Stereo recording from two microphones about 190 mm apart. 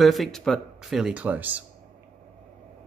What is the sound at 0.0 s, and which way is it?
Speech, centre (ahead or behind).